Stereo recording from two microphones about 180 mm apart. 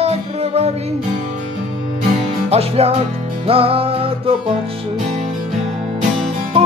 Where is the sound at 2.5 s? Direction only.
35° right (ahead or behind).